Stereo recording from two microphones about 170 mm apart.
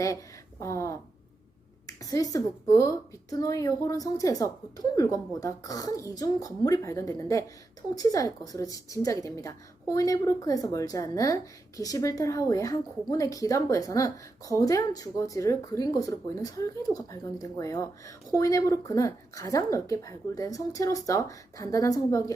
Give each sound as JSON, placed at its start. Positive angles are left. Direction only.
{"t": 0.6, "sound": "speech", "side_deg": 15}
{"t": 2.0, "sound": "a woman's voice", "side_deg": 20}